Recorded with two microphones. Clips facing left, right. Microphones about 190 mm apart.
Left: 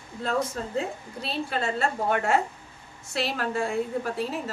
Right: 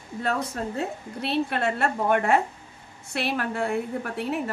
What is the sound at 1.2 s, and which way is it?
A woman's voice, 65° right (ahead or behind).